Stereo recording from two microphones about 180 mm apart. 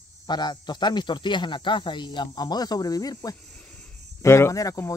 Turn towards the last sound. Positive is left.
turn(degrees=15)  # may be behind; listen again after turning